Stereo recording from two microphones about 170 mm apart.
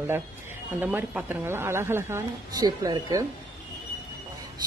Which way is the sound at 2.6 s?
25° right (ahead or behind).